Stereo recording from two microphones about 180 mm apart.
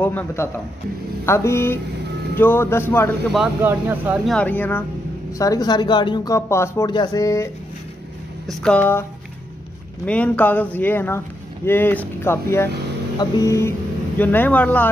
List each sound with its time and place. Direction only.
0.0 s speech: 10° left (ahead or behind)
3.6 s speech: 10° right (ahead or behind)
4.3 s speech: 5° left (ahead or behind)
5.4 s speech: 20° left (ahead or behind)
8.5 s speech: 5° left (ahead or behind)
10.0 s speech: 10° left (ahead or behind)